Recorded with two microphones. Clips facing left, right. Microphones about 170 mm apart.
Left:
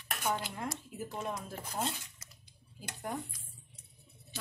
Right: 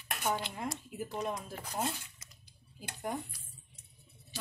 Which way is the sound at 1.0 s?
5° left (ahead or behind).